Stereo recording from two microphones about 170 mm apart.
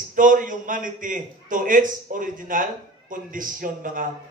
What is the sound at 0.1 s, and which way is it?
A man's voice, 50° right (ahead or behind).